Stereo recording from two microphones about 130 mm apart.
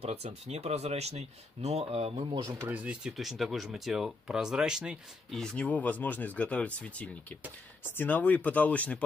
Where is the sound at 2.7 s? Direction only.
10° right (ahead or behind).